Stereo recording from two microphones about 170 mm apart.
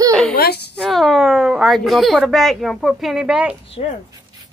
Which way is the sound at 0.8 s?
Centre (ahead or behind).